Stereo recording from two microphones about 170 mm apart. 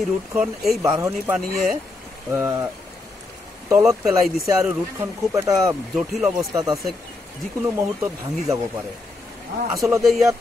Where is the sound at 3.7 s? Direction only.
5° right (ahead or behind).